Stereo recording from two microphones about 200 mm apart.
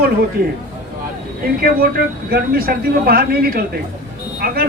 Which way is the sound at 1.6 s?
50° right (ahead or behind).